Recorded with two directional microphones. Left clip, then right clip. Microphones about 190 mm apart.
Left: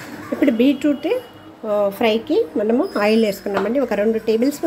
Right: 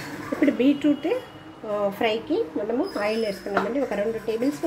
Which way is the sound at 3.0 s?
35° left (ahead or behind).